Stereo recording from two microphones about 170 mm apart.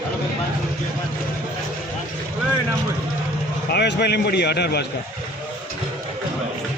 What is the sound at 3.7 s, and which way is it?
A man's voice, 80° left.